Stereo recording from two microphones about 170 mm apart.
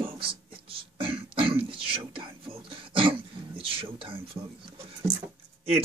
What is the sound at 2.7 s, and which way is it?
Throat clearing, 30° right (ahead or behind).